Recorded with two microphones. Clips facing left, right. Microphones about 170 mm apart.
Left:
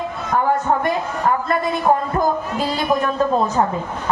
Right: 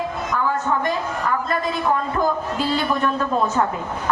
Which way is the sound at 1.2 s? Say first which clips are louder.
Left 4 dB; 50° left (ahead or behind).